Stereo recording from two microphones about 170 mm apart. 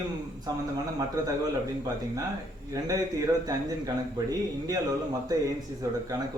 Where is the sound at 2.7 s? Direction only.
20° right (ahead or behind).